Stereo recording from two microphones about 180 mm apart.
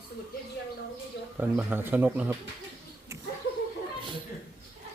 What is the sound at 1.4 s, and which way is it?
Speech, 10° right (ahead or behind).